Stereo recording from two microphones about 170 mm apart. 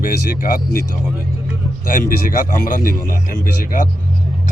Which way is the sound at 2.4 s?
55° left (ahead or behind).